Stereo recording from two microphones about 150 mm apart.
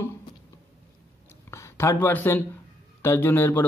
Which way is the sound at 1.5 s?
20° left (ahead or behind).